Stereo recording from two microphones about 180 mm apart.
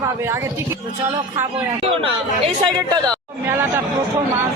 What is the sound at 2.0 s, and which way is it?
Speech, 30° right (ahead or behind).